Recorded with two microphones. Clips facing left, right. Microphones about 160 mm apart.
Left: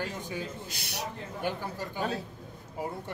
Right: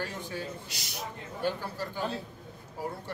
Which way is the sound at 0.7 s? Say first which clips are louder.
Left 3 dB; 60° left (ahead or behind).